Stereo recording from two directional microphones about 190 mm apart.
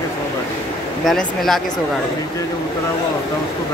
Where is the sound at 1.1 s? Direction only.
Centre (ahead or behind).